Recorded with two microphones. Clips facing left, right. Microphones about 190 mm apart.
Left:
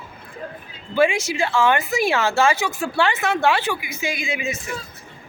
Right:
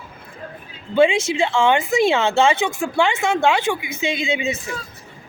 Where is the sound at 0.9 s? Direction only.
20° right (ahead or behind).